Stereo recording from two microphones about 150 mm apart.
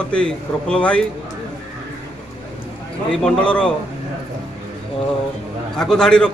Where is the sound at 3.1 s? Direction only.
5° left (ahead or behind).